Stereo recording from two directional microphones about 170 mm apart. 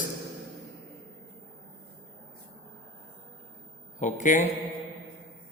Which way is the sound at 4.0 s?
45° left (ahead or behind).